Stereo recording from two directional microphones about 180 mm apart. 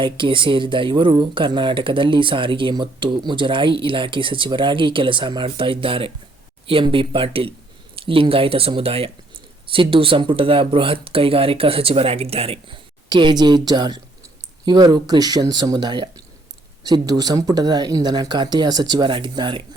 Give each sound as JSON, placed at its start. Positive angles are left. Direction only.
{"t": 0.0, "sound": "speech", "side_deg": -25}